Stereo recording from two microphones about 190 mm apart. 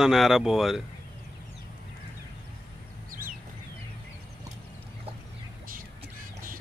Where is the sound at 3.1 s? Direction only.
45° right (ahead or behind).